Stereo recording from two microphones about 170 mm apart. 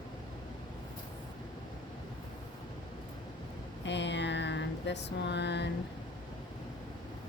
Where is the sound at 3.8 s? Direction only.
90° left.